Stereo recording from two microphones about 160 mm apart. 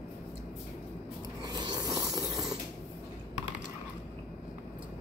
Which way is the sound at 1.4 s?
25° right (ahead or behind).